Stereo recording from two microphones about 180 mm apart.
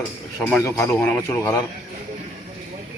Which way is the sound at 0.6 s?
15° left (ahead or behind).